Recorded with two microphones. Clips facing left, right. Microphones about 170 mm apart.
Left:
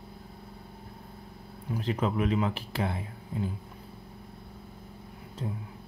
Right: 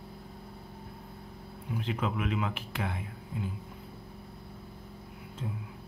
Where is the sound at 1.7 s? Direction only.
40° left (ahead or behind).